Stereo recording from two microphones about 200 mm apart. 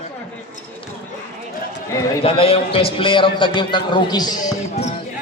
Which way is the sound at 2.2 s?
30° left (ahead or behind).